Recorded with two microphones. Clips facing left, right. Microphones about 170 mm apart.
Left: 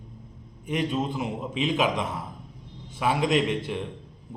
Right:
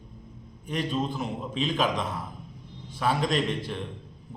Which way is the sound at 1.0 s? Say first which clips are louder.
Left 1 dB; 15° left (ahead or behind).